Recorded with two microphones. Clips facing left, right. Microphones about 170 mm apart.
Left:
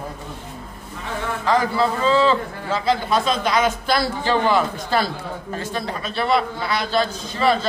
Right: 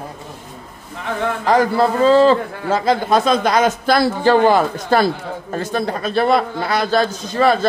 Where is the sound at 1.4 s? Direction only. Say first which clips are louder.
Right 4 dB; 50° right (ahead or behind).